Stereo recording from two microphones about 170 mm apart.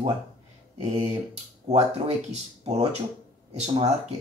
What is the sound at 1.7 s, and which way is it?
Speech, 40° right (ahead or behind).